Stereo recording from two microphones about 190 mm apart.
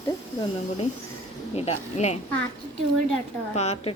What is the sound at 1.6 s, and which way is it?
Speech, 35° left (ahead or behind).